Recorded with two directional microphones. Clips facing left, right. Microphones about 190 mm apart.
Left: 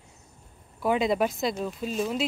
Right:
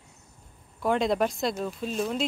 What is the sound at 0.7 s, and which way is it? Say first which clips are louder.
Speech: even; 5° left (ahead or behind).